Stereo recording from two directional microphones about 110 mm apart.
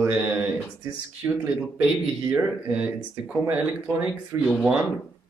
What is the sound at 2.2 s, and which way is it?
Speech, 10° right (ahead or behind).